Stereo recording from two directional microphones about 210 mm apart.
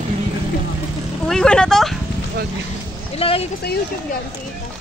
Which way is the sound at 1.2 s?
5° left (ahead or behind).